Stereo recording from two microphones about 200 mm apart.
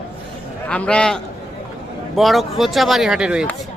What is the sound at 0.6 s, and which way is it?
A man's voice, 5° left (ahead or behind).